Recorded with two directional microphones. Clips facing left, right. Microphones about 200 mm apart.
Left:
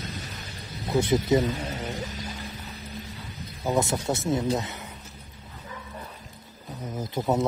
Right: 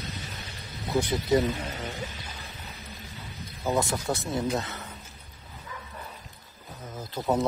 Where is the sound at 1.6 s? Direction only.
40° left (ahead or behind).